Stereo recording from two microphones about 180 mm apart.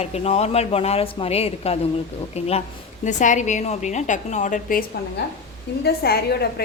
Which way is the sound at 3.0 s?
45° left (ahead or behind).